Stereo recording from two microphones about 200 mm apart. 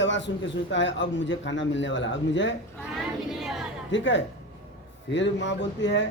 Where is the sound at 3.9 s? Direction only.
65° left (ahead or behind).